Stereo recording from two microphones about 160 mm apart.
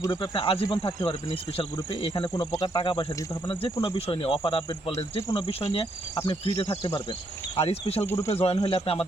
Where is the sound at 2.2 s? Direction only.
20° left (ahead or behind); by 4.9 s 35° left (ahead or behind).